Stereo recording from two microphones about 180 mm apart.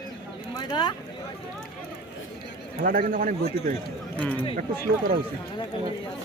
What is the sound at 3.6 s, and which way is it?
Speech, 35° left (ahead or behind).